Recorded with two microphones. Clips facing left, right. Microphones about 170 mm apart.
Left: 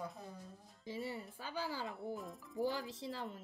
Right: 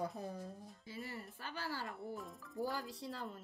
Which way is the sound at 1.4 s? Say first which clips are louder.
Left 2 dB; 15° left (ahead or behind).